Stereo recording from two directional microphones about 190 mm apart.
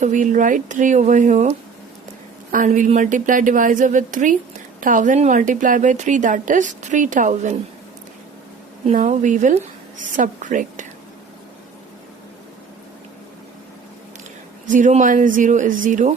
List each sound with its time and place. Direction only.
0.0 s a woman's voice: 40° right (ahead or behind)
8.9 s a woman's voice: 40° right (ahead or behind)
14.7 s speech: 40° right (ahead or behind)